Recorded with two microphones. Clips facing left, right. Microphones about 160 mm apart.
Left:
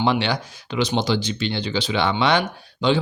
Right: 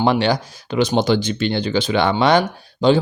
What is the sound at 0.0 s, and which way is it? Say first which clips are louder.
Speech: right 4 dB; 45° right (ahead or behind).